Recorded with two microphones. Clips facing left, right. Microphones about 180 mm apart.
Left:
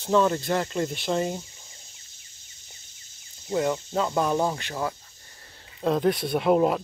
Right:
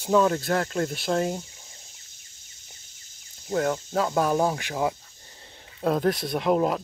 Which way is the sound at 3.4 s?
Centre (ahead or behind).